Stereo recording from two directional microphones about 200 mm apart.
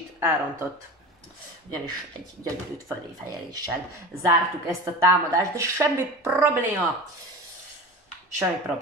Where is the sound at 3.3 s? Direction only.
20° right (ahead or behind).